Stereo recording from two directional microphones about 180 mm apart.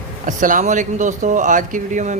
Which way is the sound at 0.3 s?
45° right (ahead or behind).